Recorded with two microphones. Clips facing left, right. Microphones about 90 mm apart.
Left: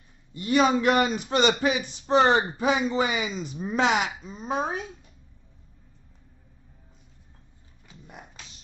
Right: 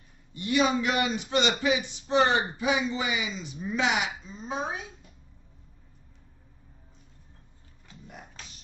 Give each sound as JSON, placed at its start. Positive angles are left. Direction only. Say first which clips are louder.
{"t": 0.4, "sound": "speech", "louder": "left 4 dB", "side_deg": 40}